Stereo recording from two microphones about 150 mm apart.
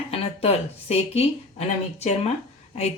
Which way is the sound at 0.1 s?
45° left (ahead or behind).